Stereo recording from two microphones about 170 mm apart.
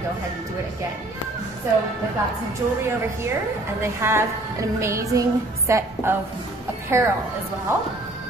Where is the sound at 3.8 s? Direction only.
15° right (ahead or behind).